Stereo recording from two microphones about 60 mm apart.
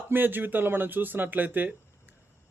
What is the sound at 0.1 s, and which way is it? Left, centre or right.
A man's voice, right.